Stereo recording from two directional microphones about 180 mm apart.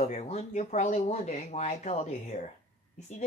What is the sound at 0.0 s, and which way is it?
Speech, 35° left (ahead or behind).